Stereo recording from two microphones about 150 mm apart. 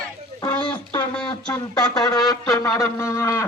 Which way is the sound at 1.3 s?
25° left (ahead or behind).